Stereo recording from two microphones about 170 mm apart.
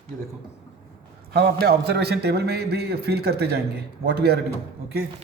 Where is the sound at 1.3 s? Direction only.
70° right (ahead or behind).